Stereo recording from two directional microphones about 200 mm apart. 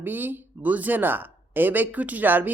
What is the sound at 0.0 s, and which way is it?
Speech, 10° right (ahead or behind).